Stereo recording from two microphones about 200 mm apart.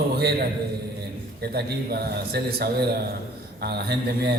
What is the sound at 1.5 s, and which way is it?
A man's voice, 50° right (ahead or behind).